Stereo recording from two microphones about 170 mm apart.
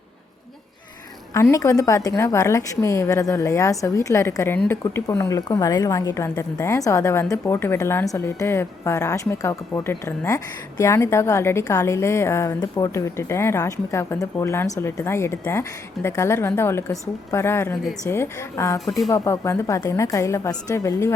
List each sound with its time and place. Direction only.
1.3 s a woman's voice: 15° left (ahead or behind)
18.9 s speech: centre (ahead or behind)
19.1 s a woman's voice: 15° left (ahead or behind)